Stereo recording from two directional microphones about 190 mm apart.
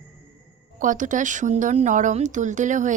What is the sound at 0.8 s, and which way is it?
Speech, 40° right (ahead or behind).